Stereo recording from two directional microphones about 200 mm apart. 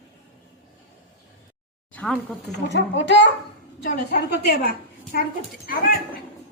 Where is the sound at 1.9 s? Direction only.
5° left (ahead or behind).